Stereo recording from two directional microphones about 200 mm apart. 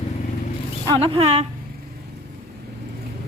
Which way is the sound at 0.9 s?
25° right (ahead or behind).